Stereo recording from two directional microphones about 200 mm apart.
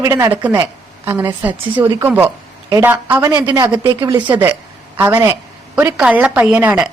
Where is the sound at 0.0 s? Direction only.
20° right (ahead or behind).